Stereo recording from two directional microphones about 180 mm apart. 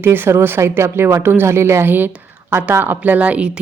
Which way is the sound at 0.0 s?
10° right (ahead or behind).